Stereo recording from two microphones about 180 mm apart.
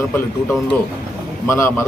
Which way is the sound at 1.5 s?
15° left (ahead or behind).